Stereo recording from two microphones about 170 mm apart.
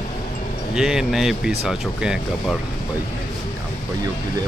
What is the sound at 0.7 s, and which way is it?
Speech, 5° right (ahead or behind).